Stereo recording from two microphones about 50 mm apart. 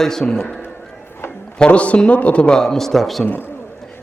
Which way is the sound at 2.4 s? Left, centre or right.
Centre.